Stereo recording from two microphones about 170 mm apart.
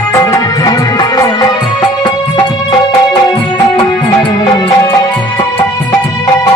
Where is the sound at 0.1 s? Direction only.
20° left (ahead or behind).